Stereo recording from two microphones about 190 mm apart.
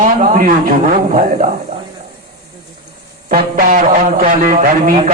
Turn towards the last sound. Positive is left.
turn(degrees=-45)  # may be behind; listen again after turning